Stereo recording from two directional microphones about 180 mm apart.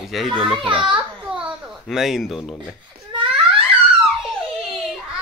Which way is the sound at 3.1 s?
25° right (ahead or behind).